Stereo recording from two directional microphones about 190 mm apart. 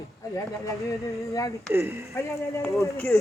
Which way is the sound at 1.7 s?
15° right (ahead or behind).